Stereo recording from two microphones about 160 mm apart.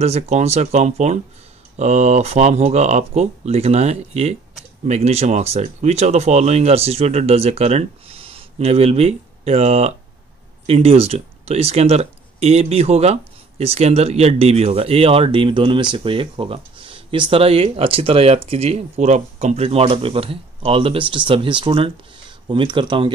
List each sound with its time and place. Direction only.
0.0 s speech: 40° right (ahead or behind)